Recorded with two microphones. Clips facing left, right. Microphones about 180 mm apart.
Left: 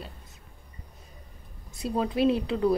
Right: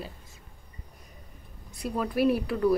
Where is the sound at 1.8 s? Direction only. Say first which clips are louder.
Left 1 dB; 25° left (ahead or behind).